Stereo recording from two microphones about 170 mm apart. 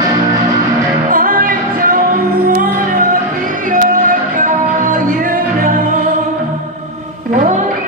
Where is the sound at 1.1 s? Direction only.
55° right (ahead or behind).